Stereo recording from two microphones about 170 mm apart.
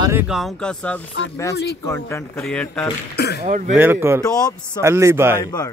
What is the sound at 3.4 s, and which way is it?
Speech, 50° right (ahead or behind).